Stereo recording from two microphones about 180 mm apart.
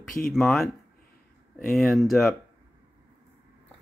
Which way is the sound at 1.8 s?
Centre (ahead or behind).